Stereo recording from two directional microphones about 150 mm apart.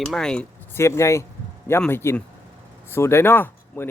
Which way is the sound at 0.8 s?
20° left (ahead or behind).